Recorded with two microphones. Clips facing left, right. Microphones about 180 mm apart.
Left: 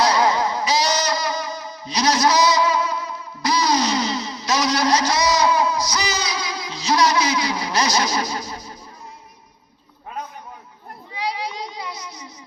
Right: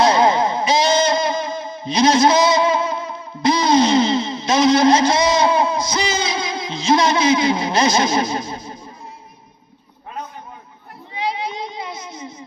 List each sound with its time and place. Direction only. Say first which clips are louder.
0.0 s music: right 4 dB; 25° right (ahead or behind)
11.1 s child singing: right 3 dB; 25° right (ahead or behind)